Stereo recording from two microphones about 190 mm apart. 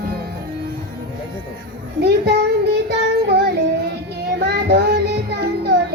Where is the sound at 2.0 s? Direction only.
60° right (ahead or behind).